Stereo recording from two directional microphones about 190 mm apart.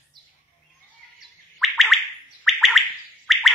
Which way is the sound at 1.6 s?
Centre (ahead or behind).